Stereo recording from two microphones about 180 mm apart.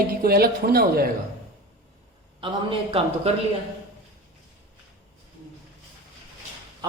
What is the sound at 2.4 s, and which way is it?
A man's voice, 30° right (ahead or behind).